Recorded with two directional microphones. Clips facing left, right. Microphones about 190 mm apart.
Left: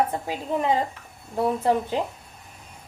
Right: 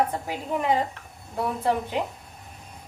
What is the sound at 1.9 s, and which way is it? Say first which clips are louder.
Speech: left 2 dB; 30° left (ahead or behind).